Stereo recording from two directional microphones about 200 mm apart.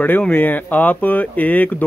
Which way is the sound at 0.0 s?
10° left (ahead or behind).